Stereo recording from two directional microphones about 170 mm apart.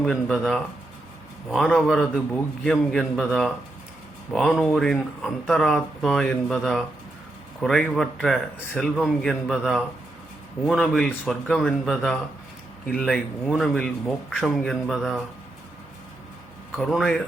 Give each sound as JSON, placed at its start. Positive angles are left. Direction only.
{"t": 0.0, "sound": "speech", "side_deg": 0}
{"t": 16.9, "sound": "speech", "side_deg": 5}